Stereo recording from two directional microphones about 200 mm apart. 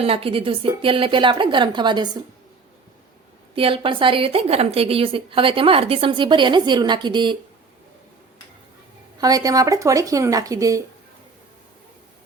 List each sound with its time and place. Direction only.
0.0 s a woman's voice: 30° right (ahead or behind)
3.5 s a woman's voice: 25° right (ahead or behind)
9.1 s speech: 20° right (ahead or behind)